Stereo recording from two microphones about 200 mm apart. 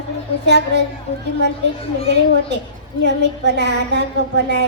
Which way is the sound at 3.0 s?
60° right (ahead or behind).